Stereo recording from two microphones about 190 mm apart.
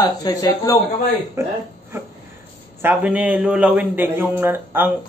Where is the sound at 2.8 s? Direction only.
10° right (ahead or behind).